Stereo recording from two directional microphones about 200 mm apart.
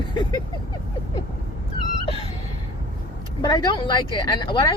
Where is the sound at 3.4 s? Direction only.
20° left (ahead or behind).